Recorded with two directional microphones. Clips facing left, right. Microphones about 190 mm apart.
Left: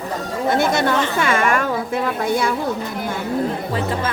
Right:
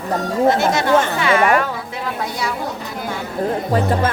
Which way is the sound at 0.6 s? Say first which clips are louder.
Right 2 dB; 55° left (ahead or behind).